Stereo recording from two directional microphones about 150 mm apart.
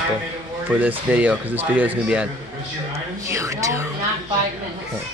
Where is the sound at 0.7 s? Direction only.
10° right (ahead or behind).